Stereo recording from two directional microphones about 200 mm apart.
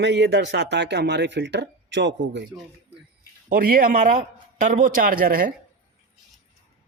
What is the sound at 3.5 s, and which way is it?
Speech, 45° right (ahead or behind).